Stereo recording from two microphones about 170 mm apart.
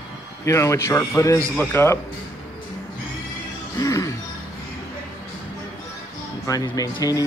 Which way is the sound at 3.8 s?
20° left (ahead or behind).